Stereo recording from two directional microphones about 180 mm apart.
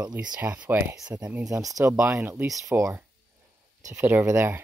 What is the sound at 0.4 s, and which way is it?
Speech, 10° right (ahead or behind).